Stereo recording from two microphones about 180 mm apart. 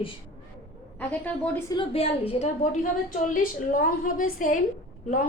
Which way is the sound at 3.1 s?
50° left (ahead or behind).